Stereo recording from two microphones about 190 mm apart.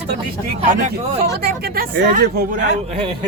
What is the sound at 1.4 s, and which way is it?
Speech, 55° right (ahead or behind).